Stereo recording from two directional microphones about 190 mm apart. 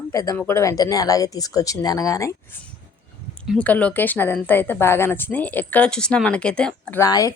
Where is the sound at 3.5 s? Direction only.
5° left (ahead or behind).